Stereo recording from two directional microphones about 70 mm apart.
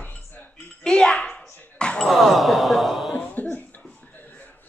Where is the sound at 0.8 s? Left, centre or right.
Centre.